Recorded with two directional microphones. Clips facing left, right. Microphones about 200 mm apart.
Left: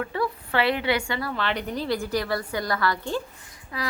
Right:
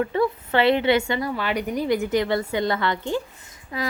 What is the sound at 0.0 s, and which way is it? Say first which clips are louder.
A woman's voice: right 6 dB; 25° right (ahead or behind).